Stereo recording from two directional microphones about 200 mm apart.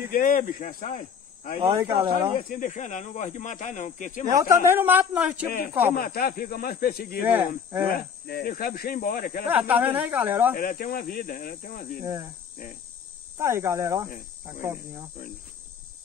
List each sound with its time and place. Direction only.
0.1 s speech: 45° left (ahead or behind)
1.7 s speech: 15° right (ahead or behind)
2.5 s speech: 40° left (ahead or behind)
4.3 s speech: 15° right (ahead or behind)
5.9 s speech: 50° left (ahead or behind)
7.2 s speech: 10° right (ahead or behind)
7.9 s speech: 50° left (ahead or behind)
9.5 s speech: 10° right (ahead or behind)
10.6 s speech: 45° left (ahead or behind)
13.4 s speech: 15° right (ahead or behind)